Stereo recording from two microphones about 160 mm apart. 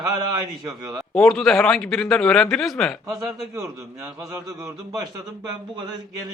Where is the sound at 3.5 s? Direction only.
20° right (ahead or behind).